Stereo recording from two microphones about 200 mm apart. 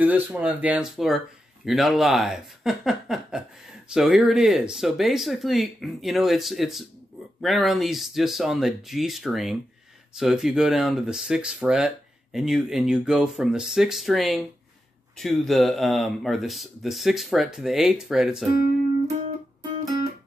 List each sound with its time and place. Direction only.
0.0 s speech: 10° right (ahead or behind)